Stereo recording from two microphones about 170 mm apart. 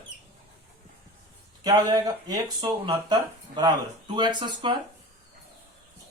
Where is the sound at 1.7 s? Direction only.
20° right (ahead or behind).